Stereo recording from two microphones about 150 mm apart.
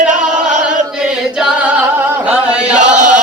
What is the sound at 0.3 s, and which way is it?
Chant, 55° right (ahead or behind).